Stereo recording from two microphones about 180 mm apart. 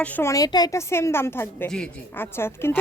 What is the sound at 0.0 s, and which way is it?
A woman's voice, 10° left (ahead or behind).